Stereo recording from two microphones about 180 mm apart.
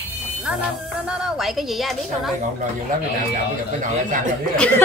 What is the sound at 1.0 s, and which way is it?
A woman's voice, 5° right (ahead or behind).